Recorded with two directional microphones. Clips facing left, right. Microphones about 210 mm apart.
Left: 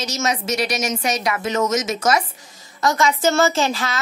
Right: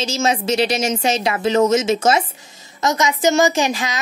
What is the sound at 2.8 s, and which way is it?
A woman's voice, 20° right (ahead or behind).